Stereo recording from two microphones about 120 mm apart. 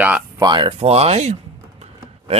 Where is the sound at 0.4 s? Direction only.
40° right (ahead or behind).